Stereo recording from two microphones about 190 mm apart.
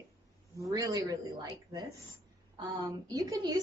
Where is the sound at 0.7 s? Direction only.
20° right (ahead or behind).